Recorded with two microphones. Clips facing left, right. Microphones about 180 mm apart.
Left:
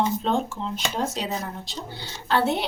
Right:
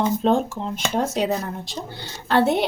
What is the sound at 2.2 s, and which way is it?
Speech, 55° right (ahead or behind).